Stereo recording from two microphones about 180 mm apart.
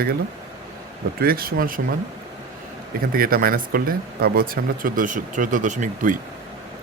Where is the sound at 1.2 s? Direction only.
55° right (ahead or behind).